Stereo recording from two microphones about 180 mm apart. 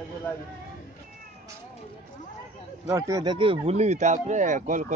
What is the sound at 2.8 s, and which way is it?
Speech, 15° right (ahead or behind).